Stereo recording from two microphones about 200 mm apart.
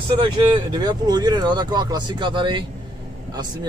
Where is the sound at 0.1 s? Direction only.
25° right (ahead or behind).